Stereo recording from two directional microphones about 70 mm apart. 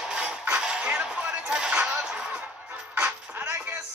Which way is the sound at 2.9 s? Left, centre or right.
Right.